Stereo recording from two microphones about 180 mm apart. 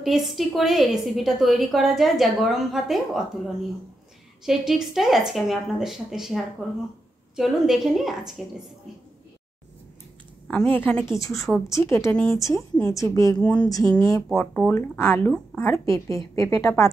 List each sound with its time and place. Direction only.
0.0 s a woman's voice: centre (ahead or behind)
4.5 s a woman's voice: centre (ahead or behind)
10.7 s speech: 10° left (ahead or behind)
13.4 s speech: 5° left (ahead or behind)
13.7 s speech: 20° left (ahead or behind)
14.3 s speech: 5° left (ahead or behind)